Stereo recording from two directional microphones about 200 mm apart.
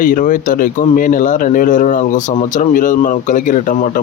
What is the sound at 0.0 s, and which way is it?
A man's voice, 40° left (ahead or behind).